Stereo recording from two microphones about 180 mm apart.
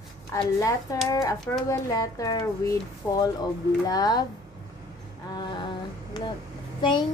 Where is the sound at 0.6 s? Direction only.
20° left (ahead or behind).